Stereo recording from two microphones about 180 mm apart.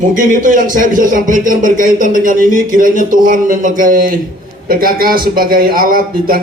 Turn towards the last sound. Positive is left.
turn(degrees=-55)  # may be behind; listen again after turning